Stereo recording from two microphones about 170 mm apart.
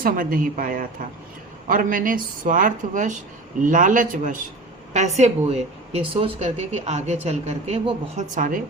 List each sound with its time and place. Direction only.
0.0 s a woman's voice: 55° right (ahead or behind)
4.9 s a woman's voice: 40° right (ahead or behind)